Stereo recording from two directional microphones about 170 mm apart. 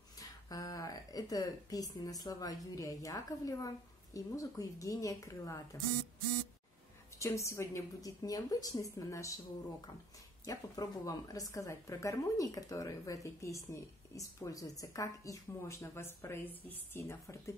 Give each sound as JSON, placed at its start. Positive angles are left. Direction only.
{"t": 0.5, "sound": "a woman's voice", "side_deg": 20}
{"t": 7.2, "sound": "a woman's voice", "side_deg": 15}
{"t": 10.4, "sound": "a woman's voice", "side_deg": 20}